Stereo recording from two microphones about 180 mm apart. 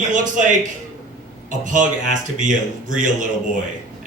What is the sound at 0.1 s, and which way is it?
Speech, 45° right (ahead or behind).